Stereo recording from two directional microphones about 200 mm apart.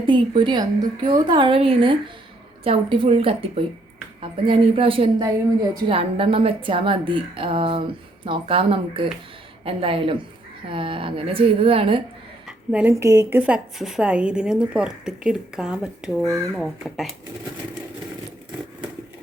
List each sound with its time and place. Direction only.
0.0 s a woman's voice: 25° right (ahead or behind)
12.5 s a woman's voice: 10° right (ahead or behind)
13.4 s a woman's voice: 5° right (ahead or behind)